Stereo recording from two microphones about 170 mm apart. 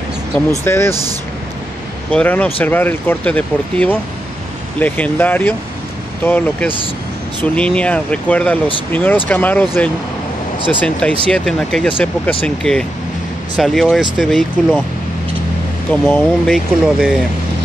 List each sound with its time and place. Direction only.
0.5 s speech: 15° left (ahead or behind)
2.0 s speech: 10° left (ahead or behind)
11.2 s speech: 5° left (ahead or behind)
15.9 s speech: 10° left (ahead or behind)